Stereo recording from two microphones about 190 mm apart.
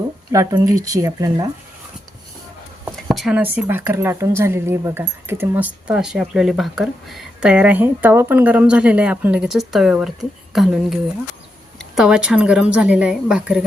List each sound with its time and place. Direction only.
0.3 s speech: 20° right (ahead or behind)
2.9 s speech: centre (ahead or behind)